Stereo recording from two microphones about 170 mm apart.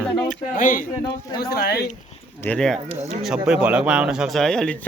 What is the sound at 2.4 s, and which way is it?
Speech, 5° left (ahead or behind).